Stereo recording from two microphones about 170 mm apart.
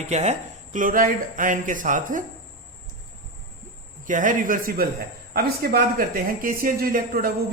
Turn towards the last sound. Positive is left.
turn(degrees=-60)  # may be behind; listen again after turning